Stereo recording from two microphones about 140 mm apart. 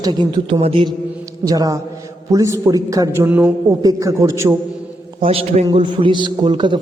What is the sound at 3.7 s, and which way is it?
Speech, 25° right (ahead or behind).